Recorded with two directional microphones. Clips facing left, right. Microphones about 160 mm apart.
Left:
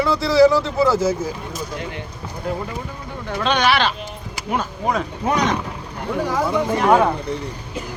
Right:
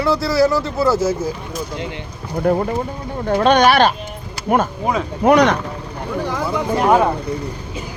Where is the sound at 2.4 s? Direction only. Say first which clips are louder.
Right 10 dB; 75° right (ahead or behind).